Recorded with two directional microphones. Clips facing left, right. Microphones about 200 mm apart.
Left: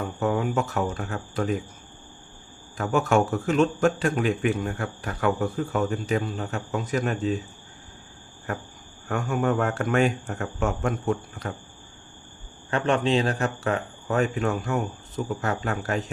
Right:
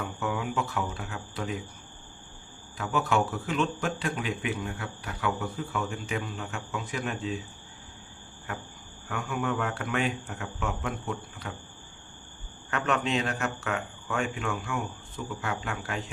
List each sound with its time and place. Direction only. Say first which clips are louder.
0.0 s speech: left 6 dB; 40° left (ahead or behind)
2.7 s speech: left 5 dB; 45° left (ahead or behind)
9.0 s speech: left 6 dB; 45° left (ahead or behind)
12.7 s speech: left 6 dB; 30° left (ahead or behind)